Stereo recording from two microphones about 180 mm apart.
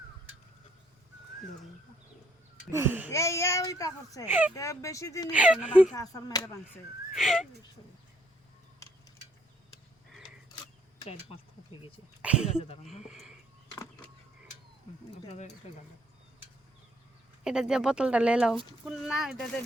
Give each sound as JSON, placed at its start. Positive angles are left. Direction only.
{"t": 2.7, "sound": "speech", "side_deg": -10}
{"t": 3.1, "sound": "a child's voice", "side_deg": 15}
{"t": 4.3, "sound": "speech", "side_deg": -10}
{"t": 4.5, "sound": "a child's voice", "side_deg": 15}
{"t": 5.3, "sound": "speech", "side_deg": -5}
{"t": 5.9, "sound": "speech", "side_deg": 20}
{"t": 7.1, "sound": "speech", "side_deg": 0}
{"t": 11.0, "sound": "speech", "side_deg": 35}
{"t": 12.2, "sound": "speech", "side_deg": -5}
{"t": 12.5, "sound": "speech", "side_deg": 35}
{"t": 13.1, "sound": "speech", "side_deg": 0}
{"t": 15.3, "sound": "speech", "side_deg": 40}
{"t": 17.4, "sound": "speech", "side_deg": -5}